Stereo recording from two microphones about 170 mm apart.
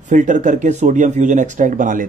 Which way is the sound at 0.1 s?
45° right (ahead or behind).